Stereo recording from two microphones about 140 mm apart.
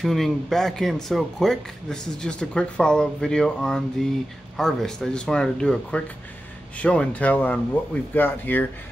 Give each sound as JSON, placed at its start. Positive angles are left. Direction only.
{"t": 0.0, "sound": "speech", "side_deg": 0}